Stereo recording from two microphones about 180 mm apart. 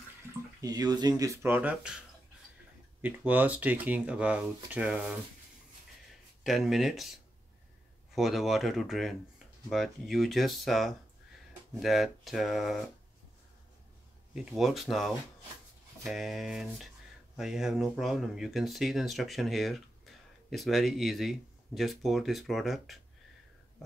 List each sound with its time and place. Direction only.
0.6 s speech: 20° right (ahead or behind); by 5.2 s 5° right (ahead or behind)
6.4 s speech: centre (ahead or behind)
8.1 s speech: centre (ahead or behind)
14.3 s speech: centre (ahead or behind)